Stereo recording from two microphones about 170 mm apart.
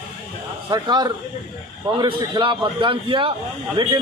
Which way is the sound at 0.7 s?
25° right (ahead or behind).